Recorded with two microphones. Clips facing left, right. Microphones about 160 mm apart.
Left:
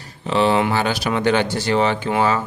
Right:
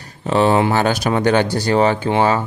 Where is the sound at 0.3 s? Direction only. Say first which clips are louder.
Right 3 dB; 45° right (ahead or behind).